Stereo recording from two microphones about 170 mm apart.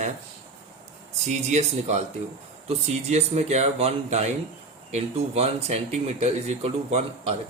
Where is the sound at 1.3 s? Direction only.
40° right (ahead or behind).